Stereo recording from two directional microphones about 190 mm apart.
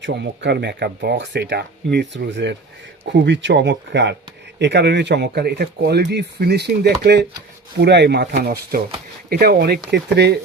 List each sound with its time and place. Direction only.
0.0 s speech: 65° right (ahead or behind)